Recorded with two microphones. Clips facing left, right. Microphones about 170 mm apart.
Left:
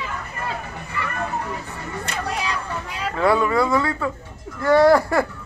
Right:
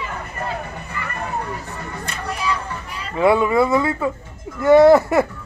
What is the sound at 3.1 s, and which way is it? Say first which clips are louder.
Speech: right 3 dB; 20° right (ahead or behind).